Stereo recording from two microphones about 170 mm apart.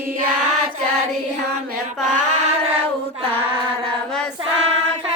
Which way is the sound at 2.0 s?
45° right (ahead or behind).